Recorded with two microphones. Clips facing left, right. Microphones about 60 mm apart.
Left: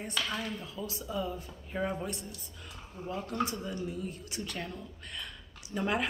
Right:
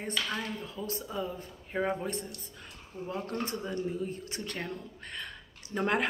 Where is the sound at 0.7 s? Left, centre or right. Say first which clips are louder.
Even; right.